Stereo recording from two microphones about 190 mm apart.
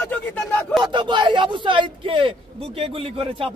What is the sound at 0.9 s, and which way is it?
Speech, 25° right (ahead or behind).